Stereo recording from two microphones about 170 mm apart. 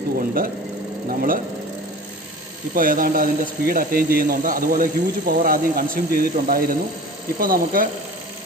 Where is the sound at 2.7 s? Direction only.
55° right (ahead or behind).